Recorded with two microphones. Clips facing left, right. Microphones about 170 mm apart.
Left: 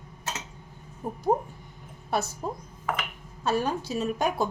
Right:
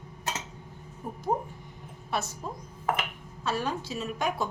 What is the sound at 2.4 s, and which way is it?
A woman's voice, 45° left (ahead or behind).